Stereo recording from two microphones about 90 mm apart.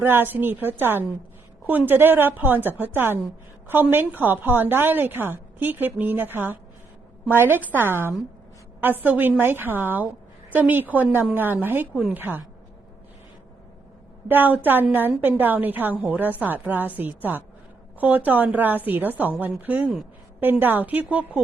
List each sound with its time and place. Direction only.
0.0 s a woman's voice: 25° right (ahead or behind)
14.3 s a woman's voice: 20° right (ahead or behind)